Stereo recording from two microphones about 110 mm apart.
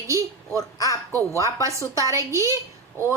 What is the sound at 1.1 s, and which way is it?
Speech, 30° right (ahead or behind).